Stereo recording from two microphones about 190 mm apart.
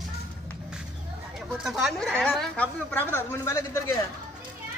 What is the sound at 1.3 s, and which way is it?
A woman's voice, centre (ahead or behind).